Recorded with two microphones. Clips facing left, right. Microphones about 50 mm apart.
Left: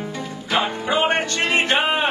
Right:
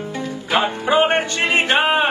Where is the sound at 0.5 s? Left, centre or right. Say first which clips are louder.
Right 4 dB; right.